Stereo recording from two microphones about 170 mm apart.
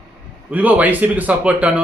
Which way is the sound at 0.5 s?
10° right (ahead or behind).